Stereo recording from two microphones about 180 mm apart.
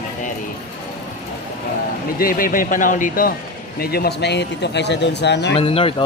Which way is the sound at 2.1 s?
50° left (ahead or behind).